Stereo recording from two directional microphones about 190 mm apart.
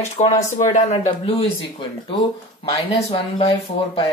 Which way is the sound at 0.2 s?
40° left (ahead or behind).